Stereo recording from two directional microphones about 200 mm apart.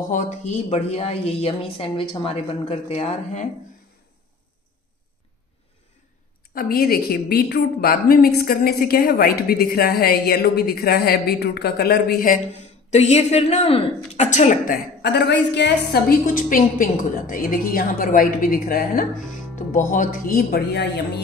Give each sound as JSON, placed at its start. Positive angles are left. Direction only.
{"t": 0.1, "sound": "a woman's voice", "side_deg": 40}
{"t": 6.5, "sound": "a woman's voice", "side_deg": 45}
{"t": 12.9, "sound": "a woman's voice", "side_deg": 35}